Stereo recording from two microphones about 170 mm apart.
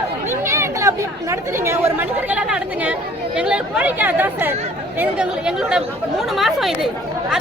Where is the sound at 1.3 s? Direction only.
15° right (ahead or behind).